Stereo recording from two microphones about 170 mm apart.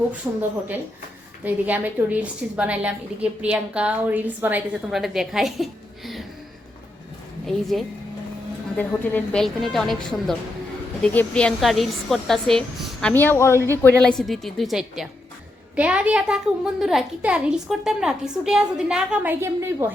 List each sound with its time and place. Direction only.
0.2 s a woman's voice: 20° right (ahead or behind)
1.5 s a woman's voice: 10° right (ahead or behind)
7.4 s a woman's voice: centre (ahead or behind)
13.8 s a woman's voice: 5° left (ahead or behind); by 19.9 s 15° right (ahead or behind)